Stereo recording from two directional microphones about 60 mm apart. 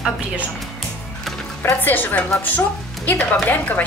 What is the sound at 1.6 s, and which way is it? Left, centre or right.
Speech, left.